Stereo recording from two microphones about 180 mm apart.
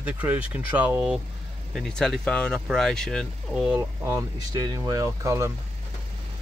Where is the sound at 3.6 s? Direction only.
15° right (ahead or behind).